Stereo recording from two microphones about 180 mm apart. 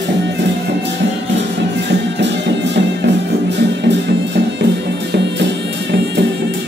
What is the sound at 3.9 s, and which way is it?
Music, 70° right (ahead or behind).